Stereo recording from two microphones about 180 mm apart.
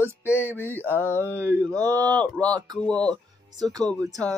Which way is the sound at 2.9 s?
5° left (ahead or behind).